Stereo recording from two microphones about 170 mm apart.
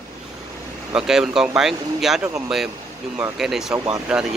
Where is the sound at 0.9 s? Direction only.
5° right (ahead or behind).